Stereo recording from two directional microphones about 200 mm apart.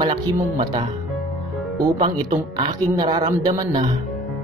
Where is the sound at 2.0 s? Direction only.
25° right (ahead or behind).